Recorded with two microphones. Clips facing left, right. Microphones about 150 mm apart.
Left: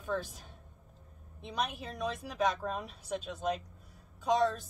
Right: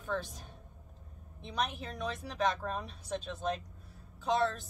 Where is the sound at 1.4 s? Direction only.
10° left (ahead or behind).